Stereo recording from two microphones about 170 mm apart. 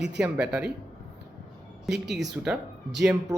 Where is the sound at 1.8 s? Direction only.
Centre (ahead or behind).